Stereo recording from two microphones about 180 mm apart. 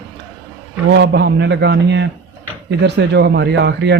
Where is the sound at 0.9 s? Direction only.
75° right (ahead or behind).